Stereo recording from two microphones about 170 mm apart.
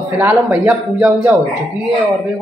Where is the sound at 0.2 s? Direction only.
10° right (ahead or behind).